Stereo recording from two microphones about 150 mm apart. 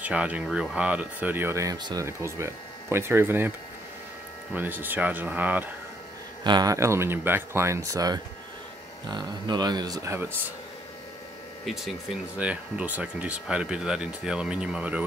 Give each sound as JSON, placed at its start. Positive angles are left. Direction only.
{"t": 0.0, "sound": "speech", "side_deg": -10}
{"t": 4.6, "sound": "speech", "side_deg": -10}
{"t": 6.4, "sound": "speech", "side_deg": -25}
{"t": 11.6, "sound": "speech", "side_deg": 0}